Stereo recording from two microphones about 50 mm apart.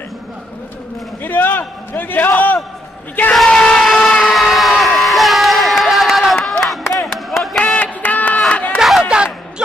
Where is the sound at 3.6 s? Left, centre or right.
Centre.